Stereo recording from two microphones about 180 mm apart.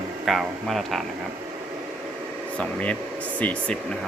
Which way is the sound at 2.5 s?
5° left (ahead or behind).